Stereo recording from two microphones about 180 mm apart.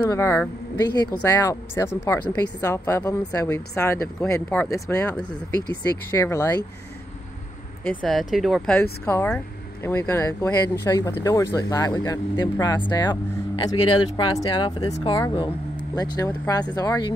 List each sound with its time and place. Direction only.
0.1 s speech: 15° left (ahead or behind)
7.9 s speech: centre (ahead or behind); by 17.1 s 20° left (ahead or behind)